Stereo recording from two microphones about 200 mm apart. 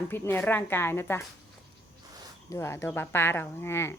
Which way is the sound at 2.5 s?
10° left (ahead or behind).